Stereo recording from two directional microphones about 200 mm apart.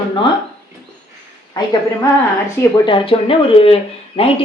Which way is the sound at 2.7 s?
25° left (ahead or behind).